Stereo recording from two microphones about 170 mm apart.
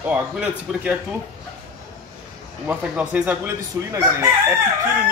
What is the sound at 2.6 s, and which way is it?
Speech, 10° right (ahead or behind).